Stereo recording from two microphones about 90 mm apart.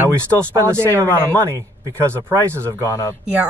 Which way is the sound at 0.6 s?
25° right (ahead or behind).